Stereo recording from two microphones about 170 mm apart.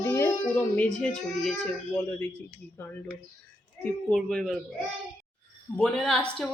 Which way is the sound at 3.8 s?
5° left (ahead or behind).